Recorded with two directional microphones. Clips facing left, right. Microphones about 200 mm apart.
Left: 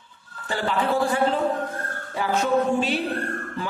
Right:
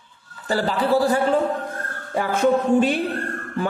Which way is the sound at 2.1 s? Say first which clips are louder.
Right 3 dB; 50° right (ahead or behind).